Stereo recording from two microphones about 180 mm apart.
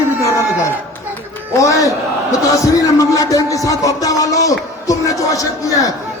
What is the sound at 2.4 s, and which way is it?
Music, 20° left (ahead or behind).